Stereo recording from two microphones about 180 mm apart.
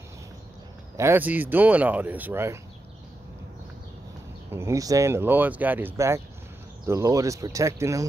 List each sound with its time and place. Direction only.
0.9 s speech: 15° right (ahead or behind)
4.5 s speech: 15° right (ahead or behind)